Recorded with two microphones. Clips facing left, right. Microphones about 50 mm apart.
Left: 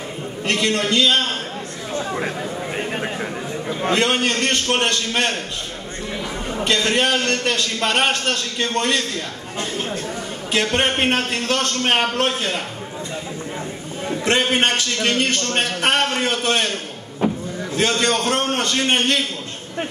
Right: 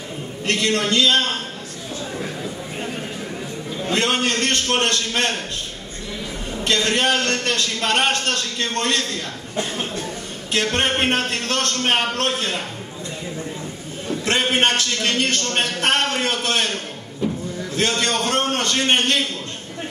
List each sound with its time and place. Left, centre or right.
0.5 s a man's voice: centre
2.9 s chatter: left
3.9 s a man's voice: centre
6.6 s a man's voice: centre
10.5 s a man's voice: centre
14.0 s a sound: centre
14.5 s a man's voice: centre
17.2 s vehicle: left
17.7 s a man's voice: centre